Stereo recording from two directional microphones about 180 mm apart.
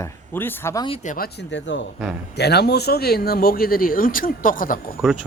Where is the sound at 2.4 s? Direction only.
65° left (ahead or behind); by 4.8 s 50° left (ahead or behind).